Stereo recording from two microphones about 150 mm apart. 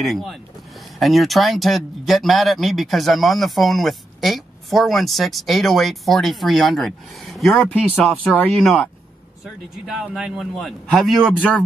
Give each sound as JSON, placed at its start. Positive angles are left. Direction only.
{"t": 0.0, "sound": "speech", "side_deg": 0}